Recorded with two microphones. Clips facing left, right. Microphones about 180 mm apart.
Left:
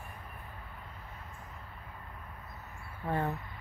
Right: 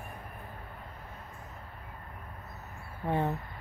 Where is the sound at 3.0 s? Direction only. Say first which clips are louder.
Right 3 dB; 20° right (ahead or behind).